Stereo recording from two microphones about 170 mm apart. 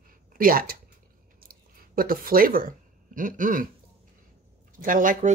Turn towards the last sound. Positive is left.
turn(degrees=-50)  # may be behind; listen again after turning